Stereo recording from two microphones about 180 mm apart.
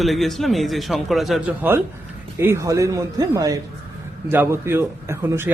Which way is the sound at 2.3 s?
15° right (ahead or behind).